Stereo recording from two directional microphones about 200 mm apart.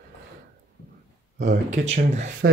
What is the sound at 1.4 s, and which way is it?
Speech, 40° right (ahead or behind).